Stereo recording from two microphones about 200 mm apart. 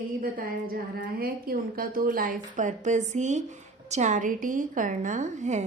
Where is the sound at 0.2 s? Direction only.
45° right (ahead or behind).